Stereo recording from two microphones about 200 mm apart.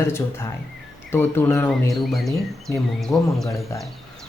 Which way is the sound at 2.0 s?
Centre (ahead or behind).